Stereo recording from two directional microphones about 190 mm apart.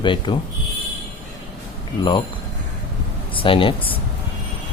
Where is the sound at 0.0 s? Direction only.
25° left (ahead or behind).